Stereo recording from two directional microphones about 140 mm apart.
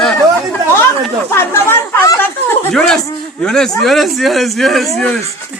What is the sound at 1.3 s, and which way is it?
Chatter, 15° left (ahead or behind).